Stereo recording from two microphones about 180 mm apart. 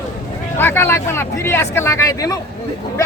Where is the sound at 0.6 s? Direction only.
10° left (ahead or behind).